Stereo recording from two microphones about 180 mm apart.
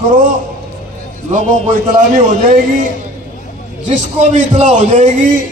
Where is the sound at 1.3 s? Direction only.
45° right (ahead or behind).